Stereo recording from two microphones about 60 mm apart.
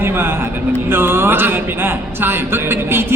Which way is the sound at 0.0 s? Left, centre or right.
Right.